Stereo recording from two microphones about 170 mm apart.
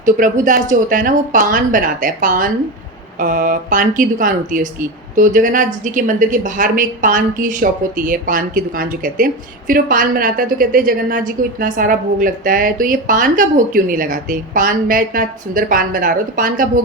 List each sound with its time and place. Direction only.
0.0 s speech: 50° right (ahead or behind)